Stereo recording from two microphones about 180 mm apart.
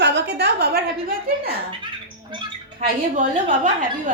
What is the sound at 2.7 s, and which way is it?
A woman's voice, 45° right (ahead or behind).